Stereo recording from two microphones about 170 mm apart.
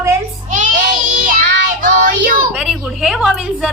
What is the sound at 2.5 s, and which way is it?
A woman's voice, 5° right (ahead or behind).